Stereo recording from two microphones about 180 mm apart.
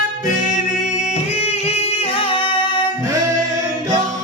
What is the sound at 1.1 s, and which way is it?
Music, 35° left (ahead or behind).